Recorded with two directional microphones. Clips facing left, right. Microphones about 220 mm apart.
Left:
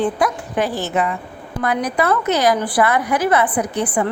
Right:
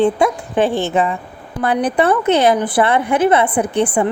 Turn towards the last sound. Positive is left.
turn(degrees=-25)  # may be behind; listen again after turning